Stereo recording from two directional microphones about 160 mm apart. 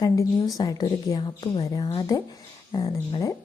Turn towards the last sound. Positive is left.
turn(degrees=20)  # may be behind; listen again after turning